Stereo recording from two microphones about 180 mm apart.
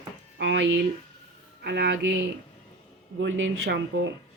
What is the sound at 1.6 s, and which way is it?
Speech, 75° right (ahead or behind).